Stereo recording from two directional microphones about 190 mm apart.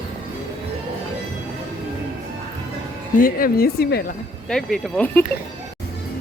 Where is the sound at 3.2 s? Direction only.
50° left (ahead or behind).